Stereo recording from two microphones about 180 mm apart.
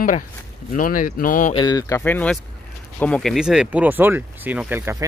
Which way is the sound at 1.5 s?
25° left (ahead or behind).